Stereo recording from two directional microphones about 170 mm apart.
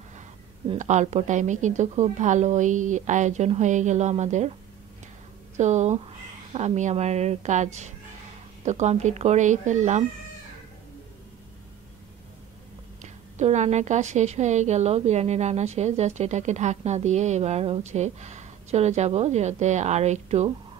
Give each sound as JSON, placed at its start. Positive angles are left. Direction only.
{"t": 0.7, "sound": "speech", "side_deg": -45}
{"t": 5.6, "sound": "speech", "side_deg": -45}
{"t": 13.0, "sound": "a woman's voice", "side_deg": -45}